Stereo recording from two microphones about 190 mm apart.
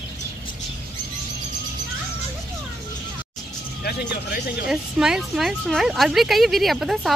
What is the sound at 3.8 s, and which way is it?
Vehicle, 55° left (ahead or behind).